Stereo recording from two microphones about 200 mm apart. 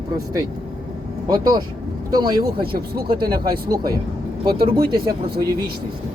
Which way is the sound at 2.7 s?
50° right (ahead or behind).